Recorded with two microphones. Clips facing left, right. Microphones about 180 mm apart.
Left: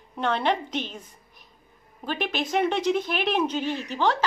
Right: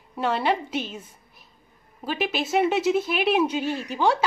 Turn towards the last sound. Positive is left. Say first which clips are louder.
# right 2 dB
turn(degrees=-10)  # may be behind; listen again after turning